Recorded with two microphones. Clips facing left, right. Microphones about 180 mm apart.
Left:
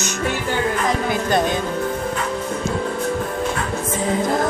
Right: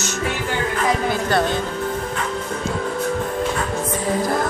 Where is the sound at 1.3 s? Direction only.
15° left (ahead or behind).